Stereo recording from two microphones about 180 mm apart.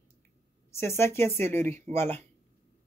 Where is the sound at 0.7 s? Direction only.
15° left (ahead or behind).